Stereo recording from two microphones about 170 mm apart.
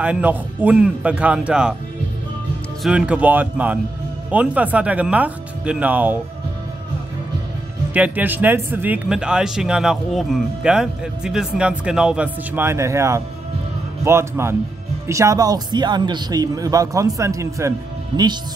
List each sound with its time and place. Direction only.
0.0 s speech: 10° right (ahead or behind)
2.8 s speech: 5° right (ahead or behind)
7.9 s speech: 10° right (ahead or behind)